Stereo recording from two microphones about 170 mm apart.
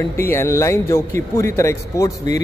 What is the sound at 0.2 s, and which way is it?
Speech, 15° left (ahead or behind).